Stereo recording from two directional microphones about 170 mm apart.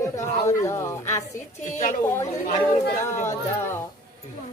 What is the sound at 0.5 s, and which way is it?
Speech, 15° left (ahead or behind).